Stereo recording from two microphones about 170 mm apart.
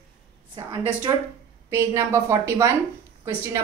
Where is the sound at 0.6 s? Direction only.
20° right (ahead or behind).